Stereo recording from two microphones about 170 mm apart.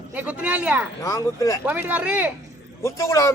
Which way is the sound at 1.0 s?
20° left (ahead or behind).